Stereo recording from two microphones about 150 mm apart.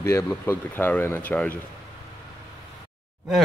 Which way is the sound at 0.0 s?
20° left (ahead or behind).